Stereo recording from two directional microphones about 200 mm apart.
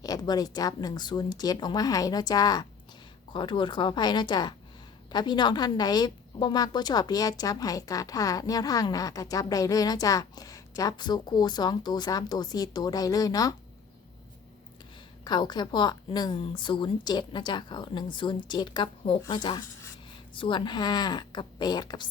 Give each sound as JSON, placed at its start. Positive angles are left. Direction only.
{"t": 0.0, "sound": "a woman's voice", "side_deg": 20}
{"t": 15.2, "sound": "a woman's voice", "side_deg": 20}